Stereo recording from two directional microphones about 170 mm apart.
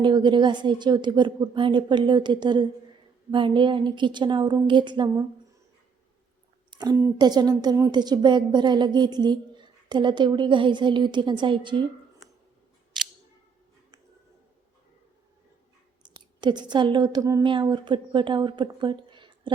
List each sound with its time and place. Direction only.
0.0 s speech: 25° right (ahead or behind)
6.7 s speech: 25° right (ahead or behind)
12.2 s a sound: centre (ahead or behind)
12.9 s scissors: centre (ahead or behind)
16.0 s speech: 25° right (ahead or behind)